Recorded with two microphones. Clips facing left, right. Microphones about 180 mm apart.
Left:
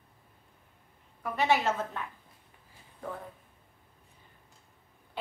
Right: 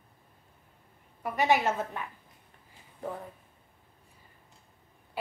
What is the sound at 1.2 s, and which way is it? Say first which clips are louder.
Speech: right 1 dB; 15° right (ahead or behind).